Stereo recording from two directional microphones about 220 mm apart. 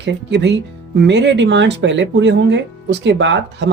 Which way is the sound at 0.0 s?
50° right (ahead or behind).